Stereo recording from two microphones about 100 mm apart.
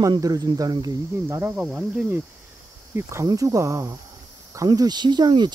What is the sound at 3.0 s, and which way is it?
Cricket, 25° right (ahead or behind).